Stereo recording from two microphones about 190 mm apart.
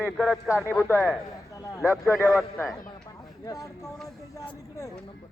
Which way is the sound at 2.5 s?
10° left (ahead or behind).